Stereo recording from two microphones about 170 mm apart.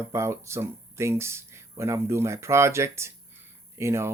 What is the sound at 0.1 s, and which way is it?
Speech, 15° right (ahead or behind).